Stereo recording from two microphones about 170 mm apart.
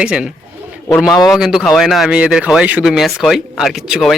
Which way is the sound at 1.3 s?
5° right (ahead or behind).